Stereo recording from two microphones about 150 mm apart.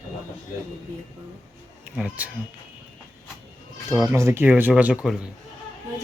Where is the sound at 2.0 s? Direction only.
10° right (ahead or behind).